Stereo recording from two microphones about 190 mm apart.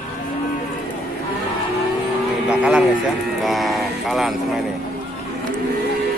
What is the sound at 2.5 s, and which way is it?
Speech, 5° right (ahead or behind).